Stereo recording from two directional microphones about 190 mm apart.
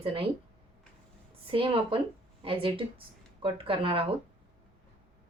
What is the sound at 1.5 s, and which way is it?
Speech, 30° right (ahead or behind).